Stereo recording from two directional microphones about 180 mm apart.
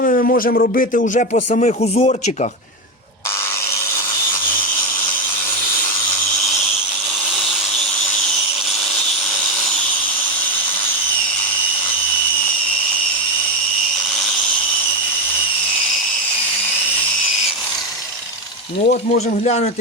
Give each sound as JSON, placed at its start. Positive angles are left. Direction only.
{"t": 0.0, "sound": "speech", "side_deg": 50}
{"t": 18.9, "sound": "speech", "side_deg": 40}